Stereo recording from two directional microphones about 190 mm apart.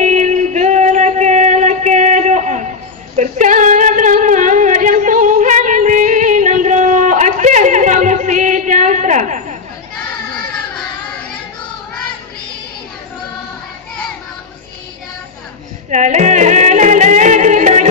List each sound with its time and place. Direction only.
0.0 s music: 40° right (ahead or behind)
3.2 s female singing: 40° right (ahead or behind)
15.9 s music: 40° right (ahead or behind)